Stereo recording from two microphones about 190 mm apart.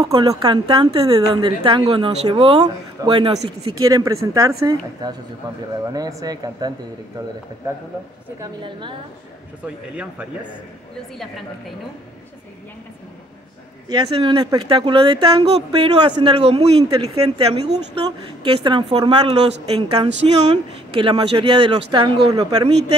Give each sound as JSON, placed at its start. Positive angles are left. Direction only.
{"t": 0.1, "sound": "speech", "side_deg": -25}
{"t": 8.4, "sound": "speech", "side_deg": -25}
{"t": 13.8, "sound": "speech", "side_deg": -20}
{"t": 17.0, "sound": "speech", "side_deg": -20}
{"t": 17.6, "sound": "speech", "side_deg": -30}